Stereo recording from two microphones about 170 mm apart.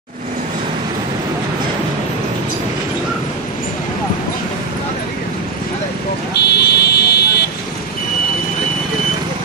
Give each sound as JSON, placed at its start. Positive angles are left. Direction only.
{"t": 6.4, "sound": "vehicle", "side_deg": 70}